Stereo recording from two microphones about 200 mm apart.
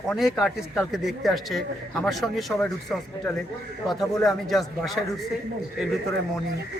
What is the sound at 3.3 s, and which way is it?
Speech, 15° left (ahead or behind).